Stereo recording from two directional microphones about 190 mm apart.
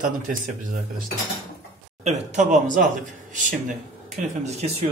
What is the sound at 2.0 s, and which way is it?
Speech, 40° right (ahead or behind).